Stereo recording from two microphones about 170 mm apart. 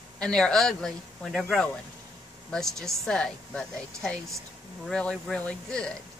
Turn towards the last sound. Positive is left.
turn(degrees=5)  # may be behind; listen again after turning